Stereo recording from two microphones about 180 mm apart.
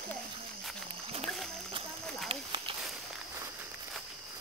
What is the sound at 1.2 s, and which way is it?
Speech, centre (ahead or behind).